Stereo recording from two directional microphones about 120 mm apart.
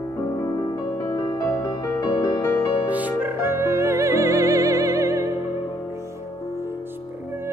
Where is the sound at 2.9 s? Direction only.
15° right (ahead or behind).